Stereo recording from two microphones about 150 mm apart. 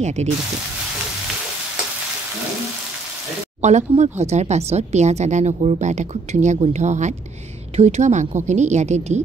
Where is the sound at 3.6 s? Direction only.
50° right (ahead or behind).